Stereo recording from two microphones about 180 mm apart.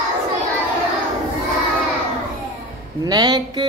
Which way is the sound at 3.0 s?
20° right (ahead or behind).